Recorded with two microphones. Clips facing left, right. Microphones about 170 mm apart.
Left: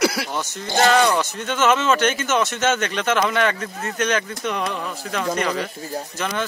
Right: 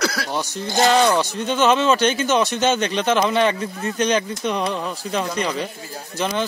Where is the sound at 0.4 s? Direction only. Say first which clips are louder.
Even; 20° right (ahead or behind).